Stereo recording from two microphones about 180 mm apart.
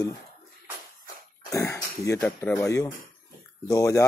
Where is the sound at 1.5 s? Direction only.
15° left (ahead or behind).